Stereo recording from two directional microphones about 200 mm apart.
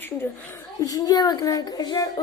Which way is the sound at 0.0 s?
10° left (ahead or behind).